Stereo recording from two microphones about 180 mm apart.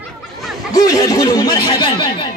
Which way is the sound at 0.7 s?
20° left (ahead or behind).